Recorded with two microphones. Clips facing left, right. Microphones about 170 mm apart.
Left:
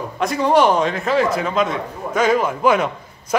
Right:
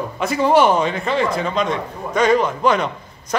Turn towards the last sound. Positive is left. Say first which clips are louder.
# left 2 dB
turn(degrees=5)  # may be behind; listen again after turning